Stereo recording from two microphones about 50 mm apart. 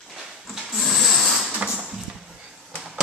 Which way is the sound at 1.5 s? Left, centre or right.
Right.